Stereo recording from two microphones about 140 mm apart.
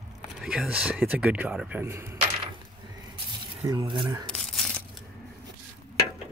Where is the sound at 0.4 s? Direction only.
5° right (ahead or behind).